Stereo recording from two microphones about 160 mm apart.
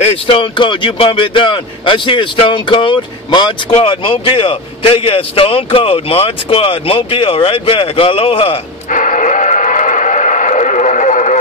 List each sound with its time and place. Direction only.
0.0 s a man's voice: 35° left (ahead or behind)
8.9 s radio: 50° left (ahead or behind)